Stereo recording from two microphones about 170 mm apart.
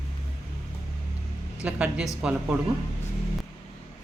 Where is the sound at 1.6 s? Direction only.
5° right (ahead or behind).